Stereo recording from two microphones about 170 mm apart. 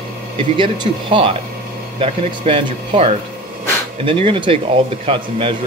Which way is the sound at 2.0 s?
35° right (ahead or behind).